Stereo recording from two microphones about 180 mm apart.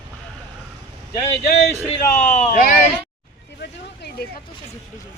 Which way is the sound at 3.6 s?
65° left (ahead or behind).